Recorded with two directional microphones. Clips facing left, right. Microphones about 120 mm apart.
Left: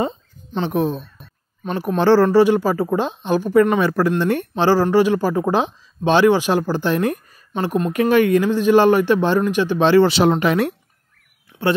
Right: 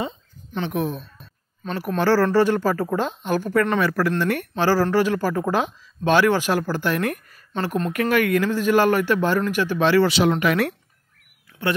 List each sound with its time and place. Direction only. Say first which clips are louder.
0.5 s speech: left 5 dB; 30° left (ahead or behind)
1.1 s a sound: left 2 dB; 15° left (ahead or behind)
2.0 s a woman's voice: left 5 dB; 25° left (ahead or behind)
7.9 s speech: left 6 dB; 25° left (ahead or behind)